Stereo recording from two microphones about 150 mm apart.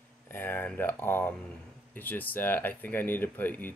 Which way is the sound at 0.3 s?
15° left (ahead or behind).